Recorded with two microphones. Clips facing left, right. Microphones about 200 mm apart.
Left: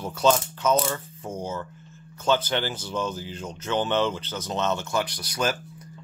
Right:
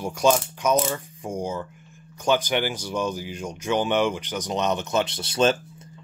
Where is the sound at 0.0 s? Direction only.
15° right (ahead or behind).